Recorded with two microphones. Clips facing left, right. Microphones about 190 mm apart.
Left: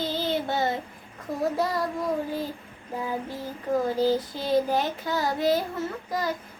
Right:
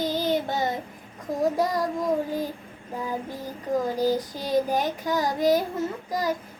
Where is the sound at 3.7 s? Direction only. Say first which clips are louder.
Even; 15° right (ahead or behind).